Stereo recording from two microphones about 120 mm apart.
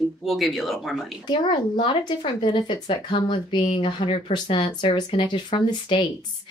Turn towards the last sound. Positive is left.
turn(degrees=45)  # may be behind; listen again after turning